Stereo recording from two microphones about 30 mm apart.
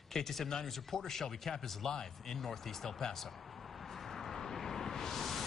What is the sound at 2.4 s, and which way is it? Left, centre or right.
Speech, centre.